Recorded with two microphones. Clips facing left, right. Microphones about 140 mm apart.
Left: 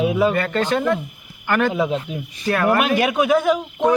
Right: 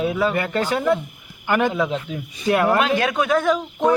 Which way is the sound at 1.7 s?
15° left (ahead or behind).